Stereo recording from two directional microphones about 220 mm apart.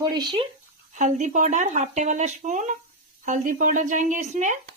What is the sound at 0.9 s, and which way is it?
A woman's voice, 35° right (ahead or behind).